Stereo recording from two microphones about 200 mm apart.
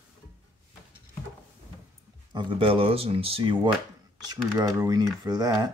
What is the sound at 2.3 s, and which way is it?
Speech, 25° right (ahead or behind).